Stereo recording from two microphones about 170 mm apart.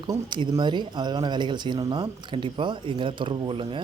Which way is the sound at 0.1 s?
25° right (ahead or behind).